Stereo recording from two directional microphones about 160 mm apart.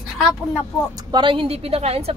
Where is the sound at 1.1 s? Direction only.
30° right (ahead or behind).